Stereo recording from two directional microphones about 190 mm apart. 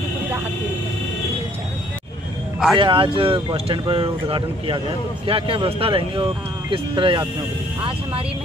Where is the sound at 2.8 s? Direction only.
25° right (ahead or behind).